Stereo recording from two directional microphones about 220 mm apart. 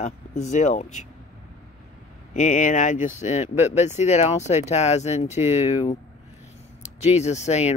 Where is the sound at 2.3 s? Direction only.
35° left (ahead or behind).